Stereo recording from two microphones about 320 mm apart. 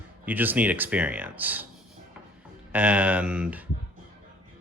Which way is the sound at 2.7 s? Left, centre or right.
Centre.